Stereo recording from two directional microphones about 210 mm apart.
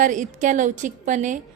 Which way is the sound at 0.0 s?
35° right (ahead or behind).